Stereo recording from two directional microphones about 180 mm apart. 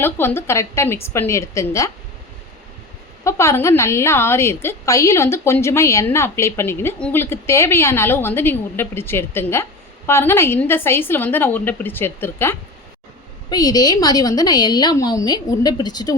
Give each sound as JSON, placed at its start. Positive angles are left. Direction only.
{"t": 0.0, "sound": "a woman's voice", "side_deg": 10}
{"t": 3.2, "sound": "a woman's voice", "side_deg": 15}